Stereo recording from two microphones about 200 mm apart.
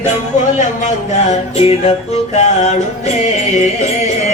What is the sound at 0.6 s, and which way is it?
Music, 35° left (ahead or behind).